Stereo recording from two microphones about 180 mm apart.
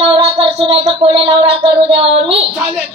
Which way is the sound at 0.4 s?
30° right (ahead or behind).